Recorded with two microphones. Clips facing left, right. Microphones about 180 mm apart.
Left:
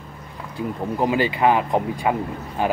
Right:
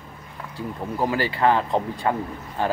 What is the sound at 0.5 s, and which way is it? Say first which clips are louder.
Speech: left 4 dB; 20° left (ahead or behind).